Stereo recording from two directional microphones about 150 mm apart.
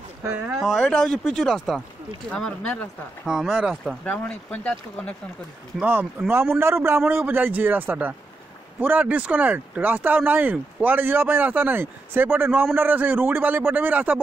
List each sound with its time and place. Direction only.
0.2 s speech: 15° right (ahead or behind)
0.6 s speech: centre (ahead or behind)
3.3 s speech: 5° right (ahead or behind)
4.0 s speech: 10° left (ahead or behind)
5.8 s speech: 15° right (ahead or behind)